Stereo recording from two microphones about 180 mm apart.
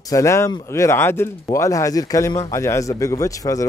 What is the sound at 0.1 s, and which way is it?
A man's voice, 15° left (ahead or behind).